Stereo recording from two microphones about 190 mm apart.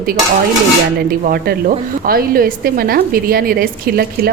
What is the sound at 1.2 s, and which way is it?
A woman's voice, 50° right (ahead or behind).